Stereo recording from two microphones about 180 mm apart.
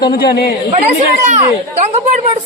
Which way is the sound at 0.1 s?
60° left (ahead or behind).